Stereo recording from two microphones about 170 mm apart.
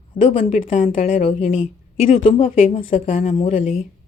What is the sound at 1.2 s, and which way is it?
Speech, 40° left (ahead or behind).